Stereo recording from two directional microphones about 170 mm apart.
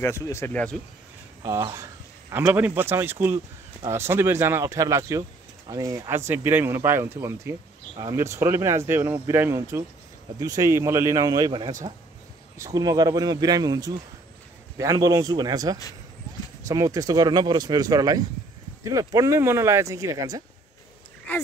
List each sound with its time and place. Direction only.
0.0 s speech: 15° left (ahead or behind)
1.4 s speech: 20° right (ahead or behind)
21.3 s speech: 10° left (ahead or behind)